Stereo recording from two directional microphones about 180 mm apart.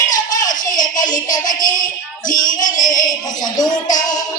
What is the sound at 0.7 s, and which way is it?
Music, 20° left (ahead or behind).